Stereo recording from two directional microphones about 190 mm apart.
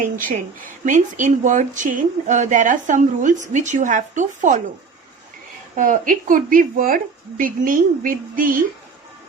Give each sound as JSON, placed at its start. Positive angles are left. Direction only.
{"t": 0.0, "sound": "speech", "side_deg": -45}
{"t": 5.7, "sound": "speech", "side_deg": -45}